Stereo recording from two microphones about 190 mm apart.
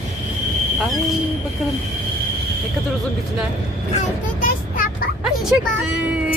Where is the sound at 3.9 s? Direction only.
45° left (ahead or behind).